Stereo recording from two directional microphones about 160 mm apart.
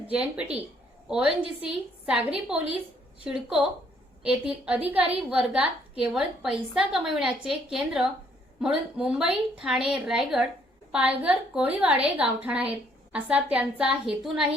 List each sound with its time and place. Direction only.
0.1 s a woman's voice: 5° right (ahead or behind)